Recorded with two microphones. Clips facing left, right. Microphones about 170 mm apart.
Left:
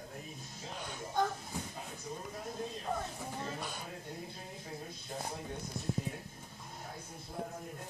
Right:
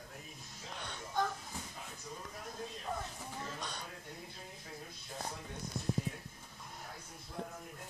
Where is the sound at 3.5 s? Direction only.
10° left (ahead or behind).